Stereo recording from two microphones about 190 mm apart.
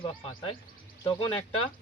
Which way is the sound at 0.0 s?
25° left (ahead or behind).